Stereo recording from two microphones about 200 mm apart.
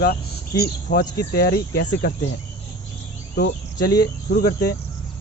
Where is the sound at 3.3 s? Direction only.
50° left (ahead or behind).